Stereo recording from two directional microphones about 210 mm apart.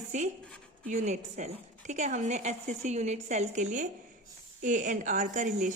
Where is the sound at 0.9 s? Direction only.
35° right (ahead or behind).